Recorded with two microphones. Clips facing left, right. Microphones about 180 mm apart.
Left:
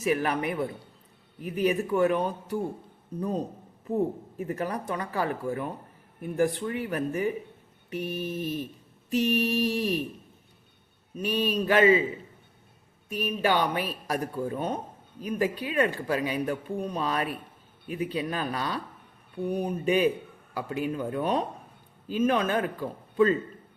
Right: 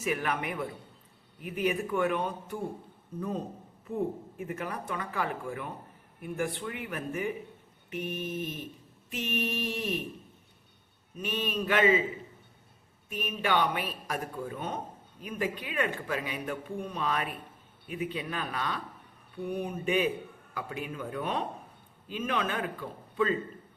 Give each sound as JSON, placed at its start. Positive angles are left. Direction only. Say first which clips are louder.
{"t": 0.0, "sound": "speech", "louder": "left 5 dB", "side_deg": 35}
{"t": 11.2, "sound": "speech", "louder": "left 5 dB", "side_deg": 35}
{"t": 13.1, "sound": "speech", "louder": "left 4 dB", "side_deg": 35}